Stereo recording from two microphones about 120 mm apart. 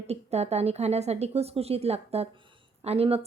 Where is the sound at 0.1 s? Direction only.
65° right (ahead or behind).